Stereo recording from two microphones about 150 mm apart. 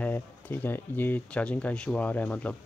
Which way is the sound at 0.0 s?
10° left (ahead or behind).